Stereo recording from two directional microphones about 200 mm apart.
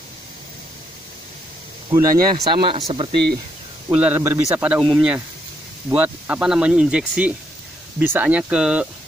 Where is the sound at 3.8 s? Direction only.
10° right (ahead or behind).